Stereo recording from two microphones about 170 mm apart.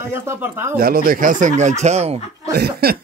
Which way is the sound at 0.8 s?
60° right (ahead or behind).